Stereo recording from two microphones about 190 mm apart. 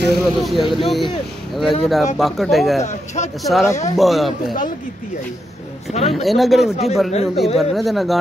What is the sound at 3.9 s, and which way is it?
Speech, centre (ahead or behind).